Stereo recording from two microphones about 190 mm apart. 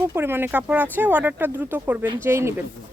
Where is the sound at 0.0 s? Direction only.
10° right (ahead or behind).